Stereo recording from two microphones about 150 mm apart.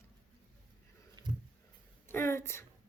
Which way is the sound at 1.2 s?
30° right (ahead or behind).